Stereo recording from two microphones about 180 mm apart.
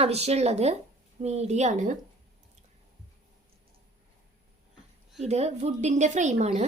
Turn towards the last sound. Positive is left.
turn(degrees=-40)  # may be behind; listen again after turning